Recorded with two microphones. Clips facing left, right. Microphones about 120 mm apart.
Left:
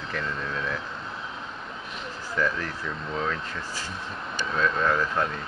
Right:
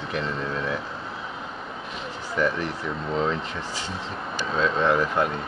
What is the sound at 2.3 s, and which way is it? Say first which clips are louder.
Speech: right 3 dB; 15° right (ahead or behind).